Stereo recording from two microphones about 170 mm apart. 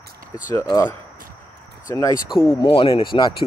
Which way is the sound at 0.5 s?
15° left (ahead or behind).